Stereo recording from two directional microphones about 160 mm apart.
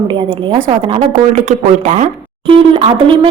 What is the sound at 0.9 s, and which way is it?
Speech, 45° right (ahead or behind).